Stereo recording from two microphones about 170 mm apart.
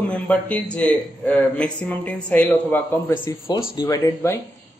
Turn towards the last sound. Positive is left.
turn(degrees=15)  # may be behind; listen again after turning